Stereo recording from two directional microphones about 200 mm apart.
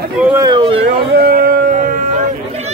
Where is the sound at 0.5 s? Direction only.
25° right (ahead or behind).